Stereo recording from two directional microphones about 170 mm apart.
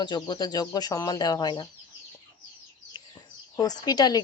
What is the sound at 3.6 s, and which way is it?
Speech, 25° left (ahead or behind).